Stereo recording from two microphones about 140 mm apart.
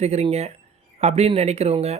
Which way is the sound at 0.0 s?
50° right (ahead or behind).